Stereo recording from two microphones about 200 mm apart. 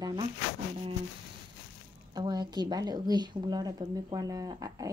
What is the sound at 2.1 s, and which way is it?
A woman's voice, 20° right (ahead or behind).